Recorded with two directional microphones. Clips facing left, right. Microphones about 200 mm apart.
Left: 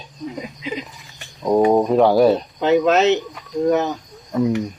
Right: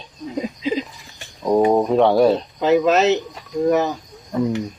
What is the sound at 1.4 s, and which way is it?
Speech, centre (ahead or behind).